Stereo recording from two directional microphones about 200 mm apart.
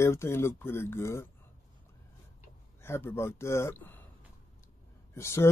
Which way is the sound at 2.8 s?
10° left (ahead or behind).